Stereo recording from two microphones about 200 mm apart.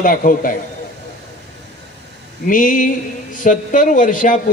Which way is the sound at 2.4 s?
45° left (ahead or behind).